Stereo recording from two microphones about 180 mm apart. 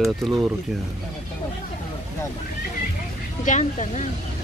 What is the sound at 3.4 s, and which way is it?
Speech, 40° left (ahead or behind).